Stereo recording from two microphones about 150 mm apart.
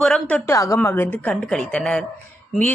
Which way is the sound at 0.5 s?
20° left (ahead or behind).